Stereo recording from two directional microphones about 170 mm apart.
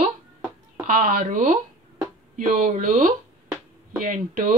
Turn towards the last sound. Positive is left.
turn(degrees=-55)  # may be behind; listen again after turning